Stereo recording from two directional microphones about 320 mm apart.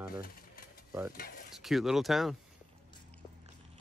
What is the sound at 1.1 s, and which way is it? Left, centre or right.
Speech, left.